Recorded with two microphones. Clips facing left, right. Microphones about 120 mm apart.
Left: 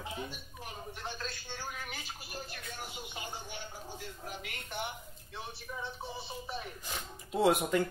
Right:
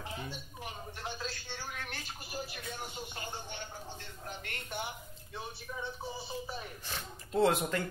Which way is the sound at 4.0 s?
5° left (ahead or behind).